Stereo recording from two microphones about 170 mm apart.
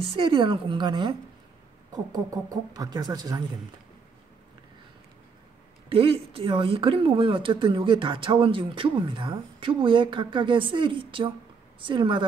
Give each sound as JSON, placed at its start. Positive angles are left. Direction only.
{"t": 0.2, "sound": "speech", "side_deg": -30}
{"t": 5.9, "sound": "speech", "side_deg": -30}